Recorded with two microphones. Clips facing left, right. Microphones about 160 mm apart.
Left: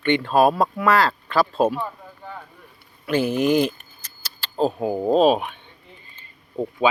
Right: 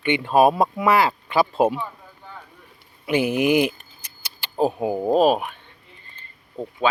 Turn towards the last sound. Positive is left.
turn(degrees=10)  # may be behind; listen again after turning